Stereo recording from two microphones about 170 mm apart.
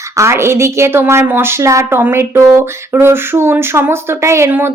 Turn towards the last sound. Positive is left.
turn(degrees=-15)  # may be behind; listen again after turning